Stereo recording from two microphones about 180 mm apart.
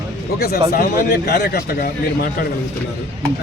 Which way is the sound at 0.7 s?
55° left (ahead or behind).